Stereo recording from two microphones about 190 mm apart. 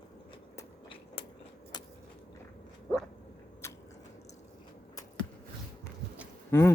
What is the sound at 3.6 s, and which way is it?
Biting, 15° left (ahead or behind).